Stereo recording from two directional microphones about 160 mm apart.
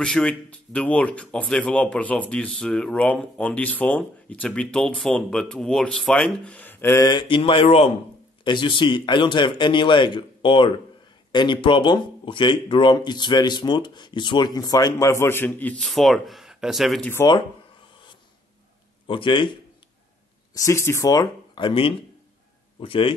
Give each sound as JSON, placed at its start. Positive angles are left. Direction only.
{"t": 0.0, "sound": "speech", "side_deg": 5}
{"t": 19.0, "sound": "a man's voice", "side_deg": 30}
{"t": 20.5, "sound": "a man's voice", "side_deg": 20}